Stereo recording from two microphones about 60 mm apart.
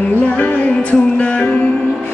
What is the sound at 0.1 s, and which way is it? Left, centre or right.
Music, left.